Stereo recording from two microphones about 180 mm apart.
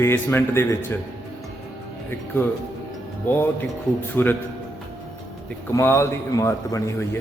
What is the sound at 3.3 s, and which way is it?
Speech, 10° left (ahead or behind).